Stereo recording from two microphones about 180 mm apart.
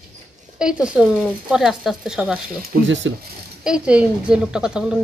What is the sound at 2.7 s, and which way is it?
Speech, 55° right (ahead or behind).